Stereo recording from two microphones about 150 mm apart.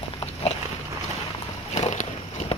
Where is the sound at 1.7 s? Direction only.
50° left (ahead or behind).